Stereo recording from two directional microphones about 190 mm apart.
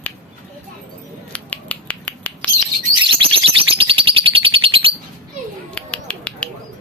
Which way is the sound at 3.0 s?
30° right (ahead or behind).